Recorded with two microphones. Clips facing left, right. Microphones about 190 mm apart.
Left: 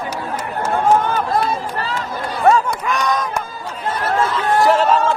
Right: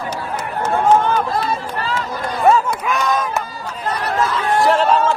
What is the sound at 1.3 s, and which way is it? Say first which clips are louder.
Run: left 2 dB; 50° left (ahead or behind).